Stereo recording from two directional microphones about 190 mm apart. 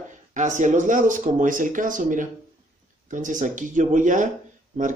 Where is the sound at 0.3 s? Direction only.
40° right (ahead or behind).